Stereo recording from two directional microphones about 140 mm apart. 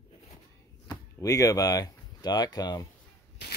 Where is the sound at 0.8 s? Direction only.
25° left (ahead or behind).